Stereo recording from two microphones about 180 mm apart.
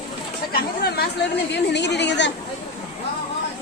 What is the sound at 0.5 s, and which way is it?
Speech, 60° left (ahead or behind).